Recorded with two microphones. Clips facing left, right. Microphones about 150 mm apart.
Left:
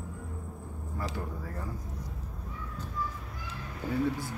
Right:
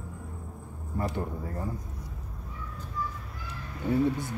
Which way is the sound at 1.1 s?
25° right (ahead or behind).